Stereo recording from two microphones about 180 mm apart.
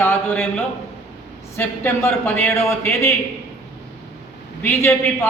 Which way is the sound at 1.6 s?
10° left (ahead or behind).